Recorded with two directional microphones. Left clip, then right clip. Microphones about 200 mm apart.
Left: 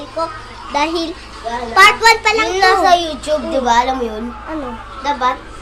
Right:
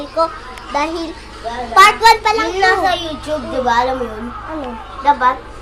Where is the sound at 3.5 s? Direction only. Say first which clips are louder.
Even; 35° left (ahead or behind).